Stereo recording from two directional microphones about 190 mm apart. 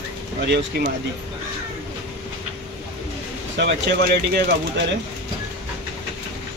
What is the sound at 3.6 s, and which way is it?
Speech, 60° right (ahead or behind).